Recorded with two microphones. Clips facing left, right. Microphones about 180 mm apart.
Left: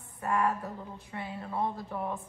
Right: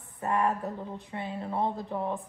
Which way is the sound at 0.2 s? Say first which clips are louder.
Right 2 dB; 25° right (ahead or behind).